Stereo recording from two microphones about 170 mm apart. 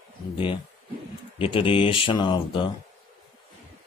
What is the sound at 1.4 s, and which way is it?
Speech, 30° left (ahead or behind).